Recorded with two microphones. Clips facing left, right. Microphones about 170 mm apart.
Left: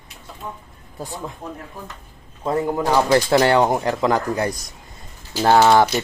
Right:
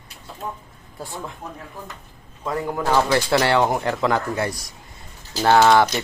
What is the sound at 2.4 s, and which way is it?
Speech, 25° left (ahead or behind).